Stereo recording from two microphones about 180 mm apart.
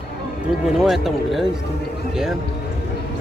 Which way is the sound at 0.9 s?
Centre (ahead or behind).